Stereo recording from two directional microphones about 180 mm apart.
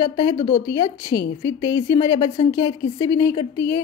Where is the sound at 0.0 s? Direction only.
20° left (ahead or behind).